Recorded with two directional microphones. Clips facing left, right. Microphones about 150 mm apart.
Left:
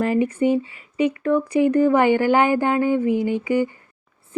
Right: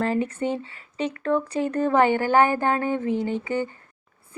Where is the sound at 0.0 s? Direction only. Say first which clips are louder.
Left 5 dB; 15° left (ahead or behind).